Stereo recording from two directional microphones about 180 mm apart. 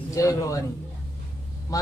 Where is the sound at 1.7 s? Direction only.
20° left (ahead or behind).